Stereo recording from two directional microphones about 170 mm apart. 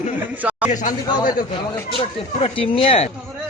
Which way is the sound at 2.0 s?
35° left (ahead or behind).